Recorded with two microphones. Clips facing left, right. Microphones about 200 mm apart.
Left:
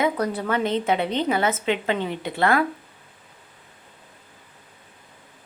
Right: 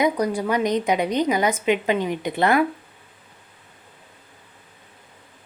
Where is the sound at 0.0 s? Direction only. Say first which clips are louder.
Right 2 dB; 15° right (ahead or behind).